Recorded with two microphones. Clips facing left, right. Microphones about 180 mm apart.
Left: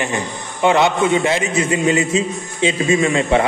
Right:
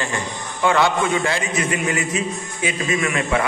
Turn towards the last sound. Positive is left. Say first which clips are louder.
# left 6 dB
turn(degrees=25)  # may be behind; listen again after turning